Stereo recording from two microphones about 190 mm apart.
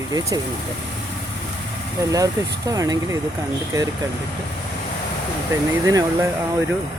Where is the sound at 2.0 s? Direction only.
20° right (ahead or behind).